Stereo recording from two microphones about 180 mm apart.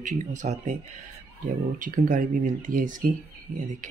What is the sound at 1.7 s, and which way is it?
Speech, 50° right (ahead or behind).